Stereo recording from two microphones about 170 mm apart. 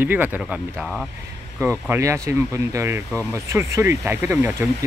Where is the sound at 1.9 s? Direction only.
15° right (ahead or behind).